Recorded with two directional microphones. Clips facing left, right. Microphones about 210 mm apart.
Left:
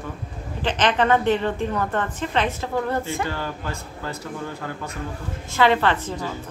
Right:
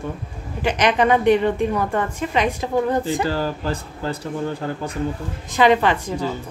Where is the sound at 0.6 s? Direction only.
10° right (ahead or behind).